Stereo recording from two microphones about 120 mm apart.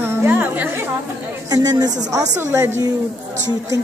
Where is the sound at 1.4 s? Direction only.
35° right (ahead or behind).